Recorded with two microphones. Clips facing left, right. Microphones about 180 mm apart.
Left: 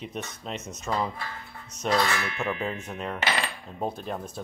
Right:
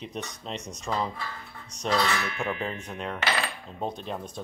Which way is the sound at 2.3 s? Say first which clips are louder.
Left 1 dB; centre (ahead or behind).